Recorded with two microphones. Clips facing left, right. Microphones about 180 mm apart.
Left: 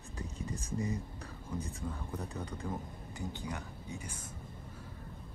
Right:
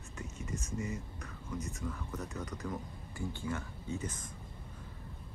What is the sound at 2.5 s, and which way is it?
Speech, 30° left (ahead or behind).